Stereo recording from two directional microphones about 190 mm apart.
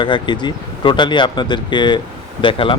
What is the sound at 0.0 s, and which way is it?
Speech, 25° left (ahead or behind).